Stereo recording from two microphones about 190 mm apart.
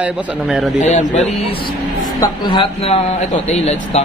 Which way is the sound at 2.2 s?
25° left (ahead or behind).